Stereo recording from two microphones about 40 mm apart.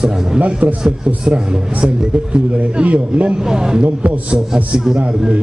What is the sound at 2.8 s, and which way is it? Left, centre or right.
Speech, right.